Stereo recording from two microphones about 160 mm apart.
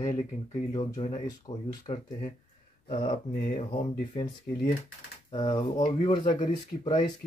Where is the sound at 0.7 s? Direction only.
25° left (ahead or behind).